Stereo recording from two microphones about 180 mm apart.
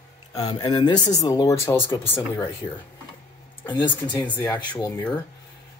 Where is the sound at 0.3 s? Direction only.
20° left (ahead or behind).